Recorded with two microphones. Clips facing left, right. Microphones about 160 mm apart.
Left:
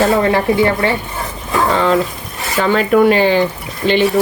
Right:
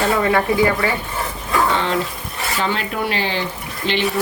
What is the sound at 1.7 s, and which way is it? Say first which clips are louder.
Speech: left 6 dB; 40° left (ahead or behind).